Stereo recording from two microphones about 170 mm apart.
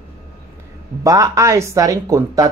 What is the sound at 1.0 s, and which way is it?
Speech, 20° right (ahead or behind).